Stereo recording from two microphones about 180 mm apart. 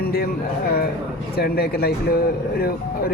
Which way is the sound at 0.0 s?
60° left (ahead or behind).